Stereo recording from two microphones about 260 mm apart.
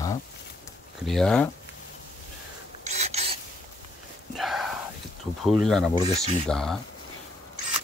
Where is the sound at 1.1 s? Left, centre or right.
Centre.